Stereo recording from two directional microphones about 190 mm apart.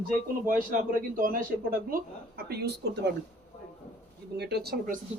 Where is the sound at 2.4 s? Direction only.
60° right (ahead or behind).